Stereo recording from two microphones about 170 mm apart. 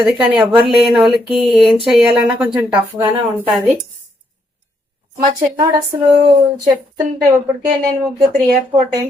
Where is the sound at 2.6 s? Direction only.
15° right (ahead or behind).